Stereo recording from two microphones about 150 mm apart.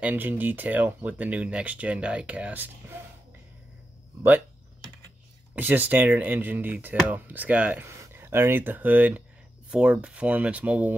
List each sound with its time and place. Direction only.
0.0 s speech: 10° right (ahead or behind)
5.5 s speech: 10° right (ahead or behind)